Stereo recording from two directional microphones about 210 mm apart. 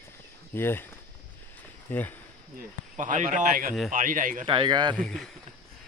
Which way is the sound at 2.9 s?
35° right (ahead or behind).